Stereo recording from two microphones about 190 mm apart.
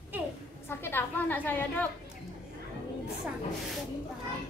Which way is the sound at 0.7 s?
10° left (ahead or behind).